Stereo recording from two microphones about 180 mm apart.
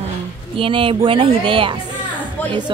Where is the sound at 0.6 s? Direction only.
30° right (ahead or behind).